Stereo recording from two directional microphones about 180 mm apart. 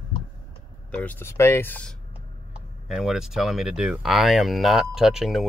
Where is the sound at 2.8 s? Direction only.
Centre (ahead or behind).